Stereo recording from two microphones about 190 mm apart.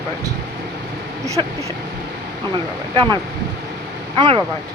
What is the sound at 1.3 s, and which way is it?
Speech, 15° right (ahead or behind).